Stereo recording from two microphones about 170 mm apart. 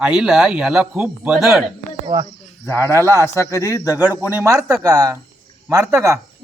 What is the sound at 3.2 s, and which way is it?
Speech, 15° left (ahead or behind).